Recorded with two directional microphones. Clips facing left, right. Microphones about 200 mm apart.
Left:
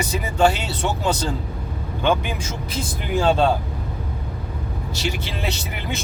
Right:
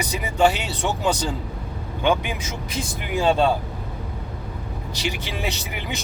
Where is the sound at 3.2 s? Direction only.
Centre (ahead or behind).